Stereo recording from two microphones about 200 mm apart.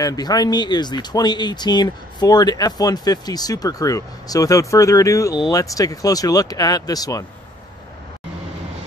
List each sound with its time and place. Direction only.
0.0 s speech: 20° left (ahead or behind)